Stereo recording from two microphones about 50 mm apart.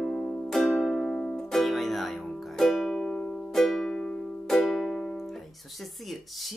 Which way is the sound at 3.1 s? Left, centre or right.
Left.